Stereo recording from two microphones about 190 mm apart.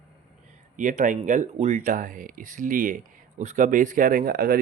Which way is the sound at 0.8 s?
45° right (ahead or behind).